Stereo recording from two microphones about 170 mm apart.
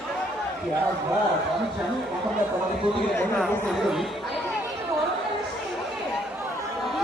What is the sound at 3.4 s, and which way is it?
Speech, centre (ahead or behind).